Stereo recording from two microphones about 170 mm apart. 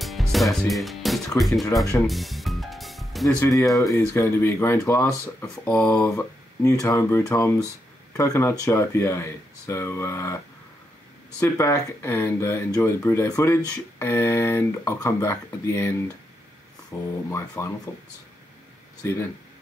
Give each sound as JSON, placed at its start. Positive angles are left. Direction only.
{"t": 0.0, "sound": "music", "side_deg": 0}
{"t": 1.4, "sound": "speech", "side_deg": 0}
{"t": 2.0, "sound": "music", "side_deg": 0}
{"t": 3.3, "sound": "speech", "side_deg": 20}
{"t": 11.4, "sound": "speech", "side_deg": 15}
{"t": 16.9, "sound": "speech", "side_deg": 15}
{"t": 19.0, "sound": "speech", "side_deg": 15}